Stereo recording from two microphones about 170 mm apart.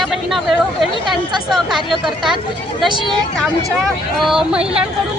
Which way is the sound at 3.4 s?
Centre (ahead or behind).